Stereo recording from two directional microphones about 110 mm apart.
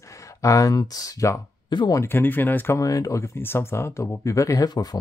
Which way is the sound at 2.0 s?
20° left (ahead or behind).